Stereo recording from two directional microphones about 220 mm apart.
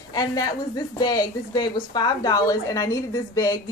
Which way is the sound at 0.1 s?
15° left (ahead or behind).